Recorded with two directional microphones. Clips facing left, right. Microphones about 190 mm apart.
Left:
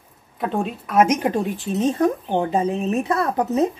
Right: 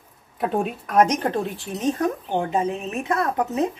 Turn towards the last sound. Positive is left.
turn(degrees=35)  # may be behind; listen again after turning